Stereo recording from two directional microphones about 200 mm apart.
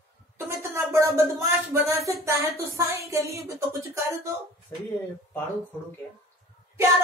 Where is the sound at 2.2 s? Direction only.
15° right (ahead or behind).